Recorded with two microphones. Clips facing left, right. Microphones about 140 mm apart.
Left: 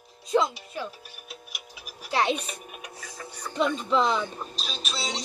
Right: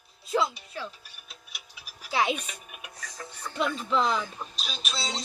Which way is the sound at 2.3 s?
35° left (ahead or behind).